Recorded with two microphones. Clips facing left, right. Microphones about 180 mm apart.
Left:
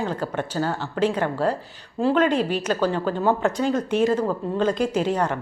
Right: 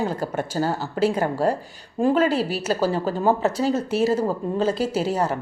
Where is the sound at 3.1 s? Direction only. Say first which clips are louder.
Right 1 dB; 40° right (ahead or behind).